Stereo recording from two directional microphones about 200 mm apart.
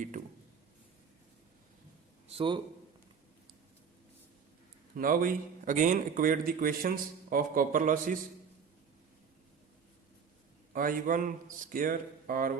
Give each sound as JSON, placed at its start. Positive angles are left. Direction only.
{"t": 2.2, "sound": "a sound", "side_deg": -25}
{"t": 4.9, "sound": "a man's voice", "side_deg": -45}
{"t": 10.7, "sound": "a man's voice", "side_deg": -45}